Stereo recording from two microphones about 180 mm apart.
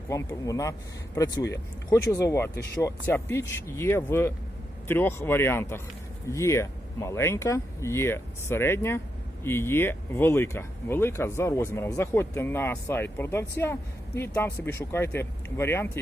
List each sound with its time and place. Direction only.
0.1 s speech: 15° left (ahead or behind)